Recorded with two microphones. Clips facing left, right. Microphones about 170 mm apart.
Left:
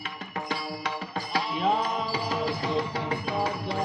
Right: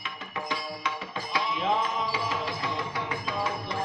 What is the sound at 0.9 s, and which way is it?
Music, 35° left (ahead or behind).